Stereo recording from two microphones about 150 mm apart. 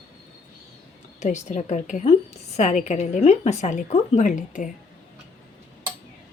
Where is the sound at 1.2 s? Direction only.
50° left (ahead or behind).